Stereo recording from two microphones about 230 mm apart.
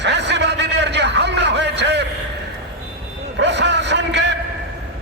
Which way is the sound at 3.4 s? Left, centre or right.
Right.